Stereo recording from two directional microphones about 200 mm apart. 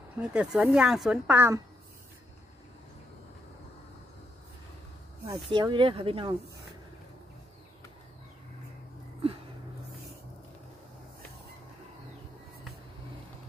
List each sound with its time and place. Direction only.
0.2 s speech: 5° right (ahead or behind)
5.2 s speech: 20° right (ahead or behind)